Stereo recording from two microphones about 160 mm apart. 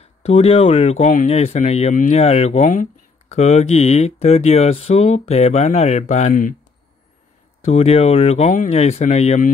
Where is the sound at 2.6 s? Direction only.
55° left (ahead or behind).